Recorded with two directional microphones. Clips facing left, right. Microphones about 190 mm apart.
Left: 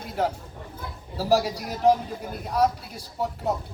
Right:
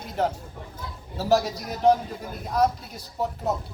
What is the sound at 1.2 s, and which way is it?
A man's voice, 5° left (ahead or behind).